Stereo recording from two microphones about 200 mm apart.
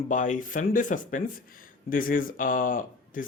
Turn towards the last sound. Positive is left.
turn(degrees=45)  # may be behind; listen again after turning